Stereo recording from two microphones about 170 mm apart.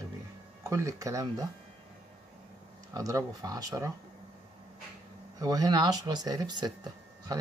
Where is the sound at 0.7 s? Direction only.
20° right (ahead or behind).